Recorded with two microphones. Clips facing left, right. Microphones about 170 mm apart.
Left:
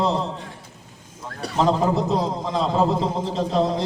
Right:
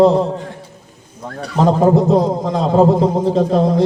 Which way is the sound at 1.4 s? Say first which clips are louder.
Right 6 dB; 50° right (ahead or behind).